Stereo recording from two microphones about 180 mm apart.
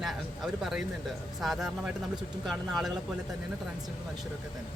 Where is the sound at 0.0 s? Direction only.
Centre (ahead or behind).